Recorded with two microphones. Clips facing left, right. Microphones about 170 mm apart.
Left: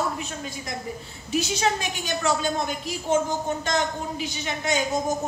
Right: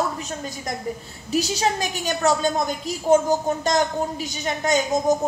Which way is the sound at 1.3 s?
40° right (ahead or behind).